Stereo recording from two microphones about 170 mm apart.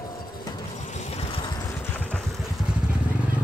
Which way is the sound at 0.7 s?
40° left (ahead or behind).